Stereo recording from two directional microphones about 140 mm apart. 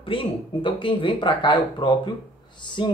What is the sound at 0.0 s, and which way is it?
Speech, 40° left (ahead or behind).